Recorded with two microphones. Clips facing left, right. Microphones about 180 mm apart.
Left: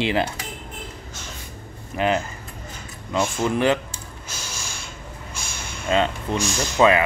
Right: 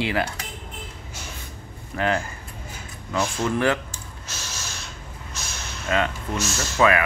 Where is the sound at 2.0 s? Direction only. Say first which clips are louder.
Left 2 dB; 20° left (ahead or behind).